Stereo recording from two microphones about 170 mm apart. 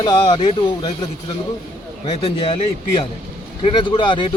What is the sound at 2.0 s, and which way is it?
Speech, 35° left (ahead or behind).